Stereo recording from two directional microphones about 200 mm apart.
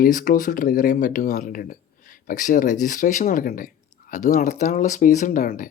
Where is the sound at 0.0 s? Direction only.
40° left (ahead or behind).